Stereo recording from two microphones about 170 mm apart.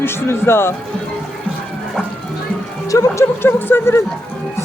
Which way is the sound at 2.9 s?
15° left (ahead or behind).